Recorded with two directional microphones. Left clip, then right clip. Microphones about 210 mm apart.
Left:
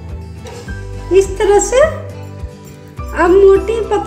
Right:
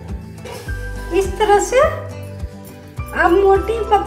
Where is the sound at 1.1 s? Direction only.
35° left (ahead or behind).